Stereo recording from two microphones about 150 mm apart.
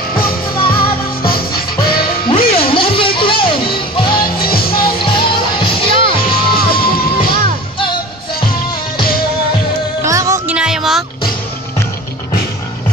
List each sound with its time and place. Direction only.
0.1 s music: 35° left (ahead or behind)
1.2 s music: 85° left
1.8 s music: 30° left (ahead or behind)
4.1 s music: 80° left
5.1 s music: 35° left (ahead or behind)
6.2 s music: 90° left
10.0 s music: 20° right (ahead or behind)
10.5 s a sound: 5° right (ahead or behind)